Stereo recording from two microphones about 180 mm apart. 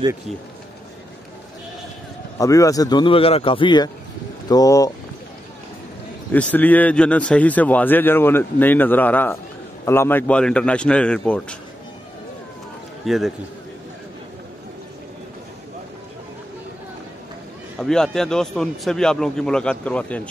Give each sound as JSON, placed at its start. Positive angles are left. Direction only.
{"t": 2.3, "sound": "a man's voice", "side_deg": 20}
{"t": 6.3, "sound": "a man's voice", "side_deg": 10}
{"t": 13.0, "sound": "a man's voice", "side_deg": 0}
{"t": 17.7, "sound": "speech", "side_deg": 5}